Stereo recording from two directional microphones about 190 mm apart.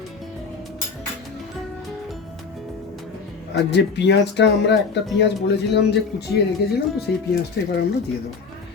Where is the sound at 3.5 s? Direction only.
65° left (ahead or behind).